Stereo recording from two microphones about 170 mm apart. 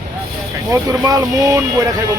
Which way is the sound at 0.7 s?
20° right (ahead or behind).